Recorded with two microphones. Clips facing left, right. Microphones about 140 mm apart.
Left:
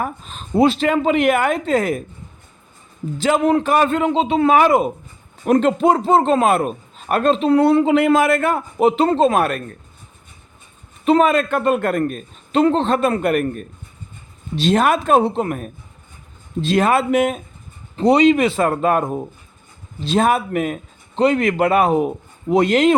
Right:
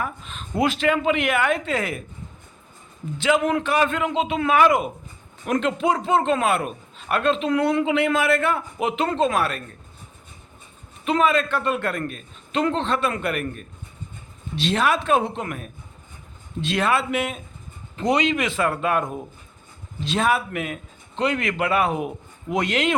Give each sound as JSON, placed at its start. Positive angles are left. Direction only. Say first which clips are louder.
{"t": 0.0, "sound": "a man's voice", "louder": "left 4 dB", "side_deg": 35}
{"t": 3.2, "sound": "a man's voice", "louder": "left 4 dB", "side_deg": 40}
{"t": 11.0, "sound": "a man's voice", "louder": "left 6 dB", "side_deg": 40}
{"t": 17.9, "sound": "a man's voice", "louder": "left 8 dB", "side_deg": 35}